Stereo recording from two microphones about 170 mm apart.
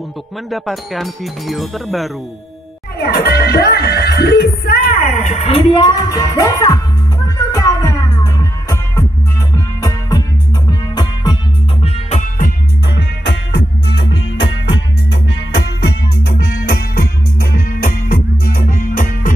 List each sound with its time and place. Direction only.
0.5 s speech: centre (ahead or behind)
3.0 s speech: 70° left (ahead or behind); by 6.8 s 20° left (ahead or behind)
7.5 s music: 20° left (ahead or behind)
11.8 s music: 40° left (ahead or behind)
12.4 s music: 70° left (ahead or behind); by 14.8 s 90° left
16.6 s music: 60° left (ahead or behind)